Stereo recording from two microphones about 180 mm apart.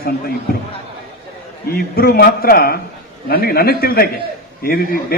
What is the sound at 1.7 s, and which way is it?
A man's voice, 55° left (ahead or behind).